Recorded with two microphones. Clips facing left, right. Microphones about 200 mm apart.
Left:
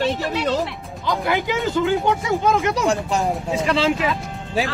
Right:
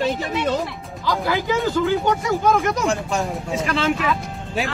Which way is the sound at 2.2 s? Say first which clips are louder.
Even; 20° left (ahead or behind).